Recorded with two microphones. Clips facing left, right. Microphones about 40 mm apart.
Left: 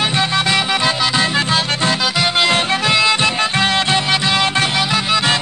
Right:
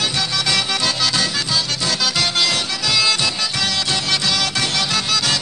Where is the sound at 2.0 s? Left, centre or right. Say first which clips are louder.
Left 1 dB; left.